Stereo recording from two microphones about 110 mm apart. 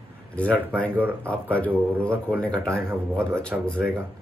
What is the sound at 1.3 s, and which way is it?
Speech, 10° left (ahead or behind).